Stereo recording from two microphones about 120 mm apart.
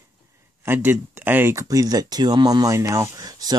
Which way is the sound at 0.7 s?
15° right (ahead or behind).